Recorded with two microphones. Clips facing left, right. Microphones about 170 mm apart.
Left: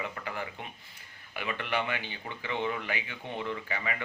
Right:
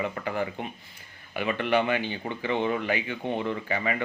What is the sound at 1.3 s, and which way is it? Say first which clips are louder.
Speech: right 8 dB; 30° right (ahead or behind).